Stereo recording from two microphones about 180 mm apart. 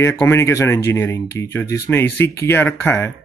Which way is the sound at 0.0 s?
15° left (ahead or behind).